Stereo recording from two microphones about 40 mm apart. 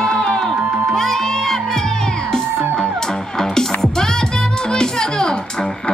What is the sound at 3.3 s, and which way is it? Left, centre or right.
Music, centre.